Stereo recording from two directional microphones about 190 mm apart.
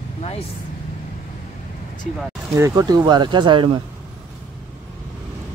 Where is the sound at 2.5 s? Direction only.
15° right (ahead or behind).